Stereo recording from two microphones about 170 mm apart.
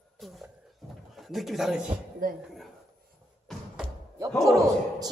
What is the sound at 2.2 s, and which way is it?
Speech, 50° right (ahead or behind).